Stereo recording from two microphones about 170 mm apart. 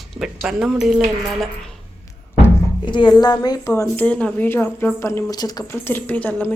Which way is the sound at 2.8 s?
25° left (ahead or behind).